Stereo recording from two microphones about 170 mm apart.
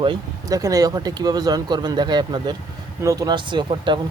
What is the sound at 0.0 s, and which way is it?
Speech, 25° right (ahead or behind).